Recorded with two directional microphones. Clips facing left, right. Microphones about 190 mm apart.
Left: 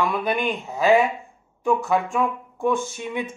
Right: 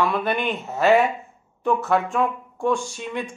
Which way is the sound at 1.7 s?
Centre (ahead or behind).